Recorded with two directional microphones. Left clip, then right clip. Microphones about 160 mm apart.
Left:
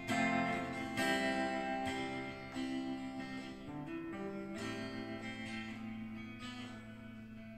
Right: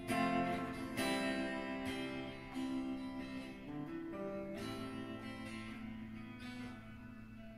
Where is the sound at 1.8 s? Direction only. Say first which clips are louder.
Left 3 dB; 35° left (ahead or behind).